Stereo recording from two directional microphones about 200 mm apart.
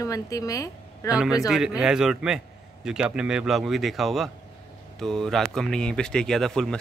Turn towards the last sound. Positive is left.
turn(degrees=5)  # may be behind; listen again after turning